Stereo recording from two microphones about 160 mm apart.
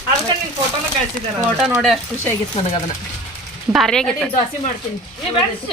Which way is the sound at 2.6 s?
40° left (ahead or behind).